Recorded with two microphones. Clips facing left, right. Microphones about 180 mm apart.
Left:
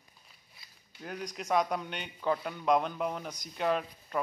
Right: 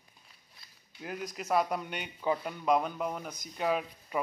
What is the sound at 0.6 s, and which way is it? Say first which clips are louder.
Speech: right 1 dB; 5° right (ahead or behind).